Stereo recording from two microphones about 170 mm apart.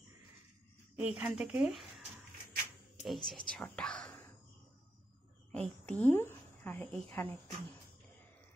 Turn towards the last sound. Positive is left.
turn(degrees=10)  # may be behind; listen again after turning